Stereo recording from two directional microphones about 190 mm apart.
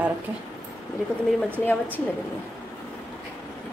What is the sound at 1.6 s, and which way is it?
Speech, 10° left (ahead or behind).